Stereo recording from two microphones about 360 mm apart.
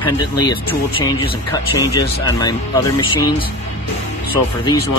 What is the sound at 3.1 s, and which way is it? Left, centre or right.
Speech, left.